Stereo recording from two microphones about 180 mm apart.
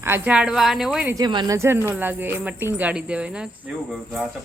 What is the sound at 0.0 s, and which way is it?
A woman's voice, 10° right (ahead or behind).